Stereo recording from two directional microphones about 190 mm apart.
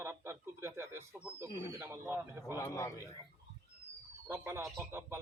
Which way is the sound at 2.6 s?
15° left (ahead or behind).